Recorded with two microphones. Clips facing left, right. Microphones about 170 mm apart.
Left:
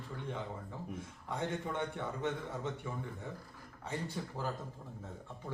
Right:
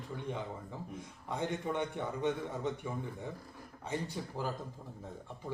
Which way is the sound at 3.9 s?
15° right (ahead or behind).